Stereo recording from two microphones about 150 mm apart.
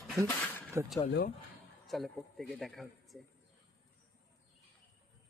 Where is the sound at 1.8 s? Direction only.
Centre (ahead or behind).